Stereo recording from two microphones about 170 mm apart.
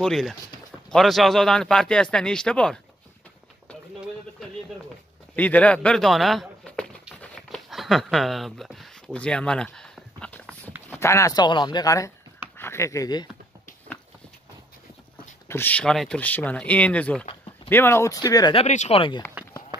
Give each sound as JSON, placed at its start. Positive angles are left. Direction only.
{"t": 0.0, "sound": "speech", "side_deg": 0}
{"t": 5.3, "sound": "speech", "side_deg": 10}
{"t": 7.2, "sound": "a sound", "side_deg": 0}
{"t": 10.9, "sound": "speech", "side_deg": 15}
{"t": 15.4, "sound": "speech", "side_deg": 10}
{"t": 18.6, "sound": "speech", "side_deg": 40}